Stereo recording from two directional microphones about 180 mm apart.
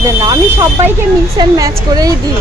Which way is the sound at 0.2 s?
20° right (ahead or behind).